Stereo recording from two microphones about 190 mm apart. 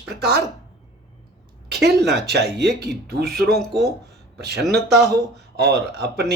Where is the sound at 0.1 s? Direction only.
60° right (ahead or behind).